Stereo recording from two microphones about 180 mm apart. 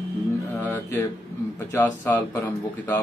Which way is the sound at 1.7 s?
15° left (ahead or behind).